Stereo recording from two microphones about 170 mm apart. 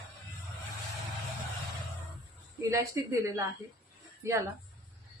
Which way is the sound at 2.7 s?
20° right (ahead or behind).